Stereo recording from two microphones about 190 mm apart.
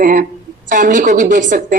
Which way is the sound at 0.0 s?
50° right (ahead or behind).